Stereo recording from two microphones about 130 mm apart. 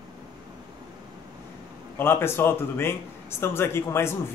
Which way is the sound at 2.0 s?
20° left (ahead or behind).